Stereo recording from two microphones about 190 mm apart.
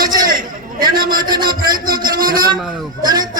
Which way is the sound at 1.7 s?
50° right (ahead or behind).